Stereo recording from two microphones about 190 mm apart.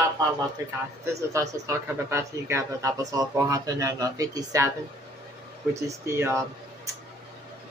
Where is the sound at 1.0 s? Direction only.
15° right (ahead or behind).